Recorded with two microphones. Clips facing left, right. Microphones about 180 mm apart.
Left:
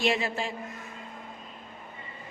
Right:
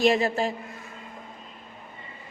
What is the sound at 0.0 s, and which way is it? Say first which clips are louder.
Speech: right 6 dB; 40° right (ahead or behind).